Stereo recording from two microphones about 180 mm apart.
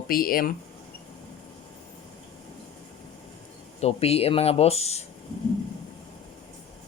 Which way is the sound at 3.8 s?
35° left (ahead or behind).